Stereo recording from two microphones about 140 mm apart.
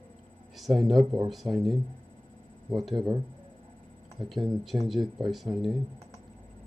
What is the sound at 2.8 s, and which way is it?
Speech, centre (ahead or behind).